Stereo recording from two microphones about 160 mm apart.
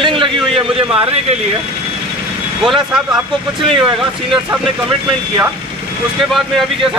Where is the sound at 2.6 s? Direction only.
5° right (ahead or behind).